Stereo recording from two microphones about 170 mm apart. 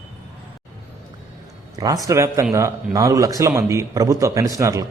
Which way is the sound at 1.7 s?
20° right (ahead or behind).